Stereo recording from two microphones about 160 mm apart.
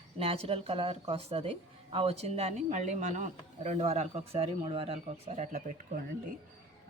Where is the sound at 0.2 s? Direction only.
35° right (ahead or behind).